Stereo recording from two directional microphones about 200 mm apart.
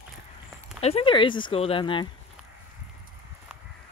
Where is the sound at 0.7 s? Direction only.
30° left (ahead or behind).